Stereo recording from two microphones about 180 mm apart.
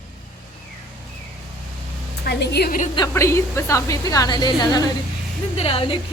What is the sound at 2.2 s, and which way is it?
Speech, 65° left (ahead or behind).